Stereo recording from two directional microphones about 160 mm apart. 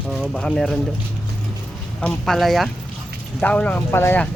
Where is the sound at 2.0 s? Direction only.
5° left (ahead or behind).